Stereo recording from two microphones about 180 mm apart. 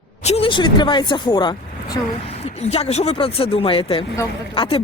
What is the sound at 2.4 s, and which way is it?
Speech, 35° left (ahead or behind).